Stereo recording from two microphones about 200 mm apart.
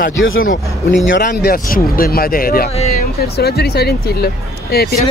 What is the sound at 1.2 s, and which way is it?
Speech, 45° left (ahead or behind).